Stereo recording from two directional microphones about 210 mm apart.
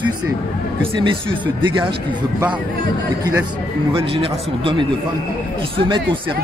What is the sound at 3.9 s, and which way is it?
A man's voice, 25° right (ahead or behind).